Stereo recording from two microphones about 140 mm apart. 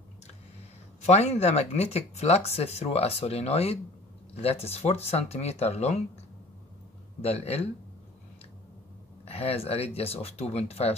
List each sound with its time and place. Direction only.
1.0 s speech: 50° left (ahead or behind)
7.2 s speech: 45° left (ahead or behind)
9.2 s speech: 45° left (ahead or behind)